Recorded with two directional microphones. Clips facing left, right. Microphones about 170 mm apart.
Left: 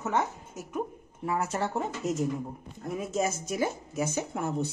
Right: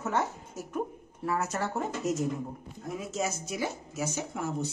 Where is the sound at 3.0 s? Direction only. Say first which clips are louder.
Left 4 dB; 50° left (ahead or behind).